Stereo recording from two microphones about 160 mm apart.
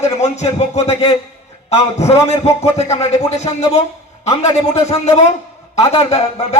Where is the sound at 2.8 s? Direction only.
45° left (ahead or behind).